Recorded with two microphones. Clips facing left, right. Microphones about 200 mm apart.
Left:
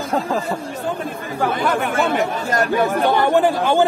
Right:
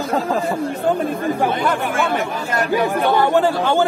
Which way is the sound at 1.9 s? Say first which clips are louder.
Left 1 dB; 40° left (ahead or behind).